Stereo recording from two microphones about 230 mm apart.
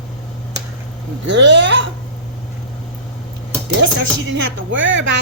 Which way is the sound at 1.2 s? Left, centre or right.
Right.